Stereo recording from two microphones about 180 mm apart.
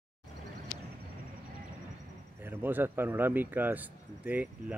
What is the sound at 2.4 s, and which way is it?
Speech, 10° right (ahead or behind).